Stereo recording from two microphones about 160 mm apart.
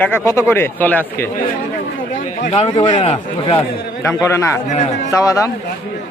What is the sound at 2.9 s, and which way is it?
Speech, 40° left (ahead or behind).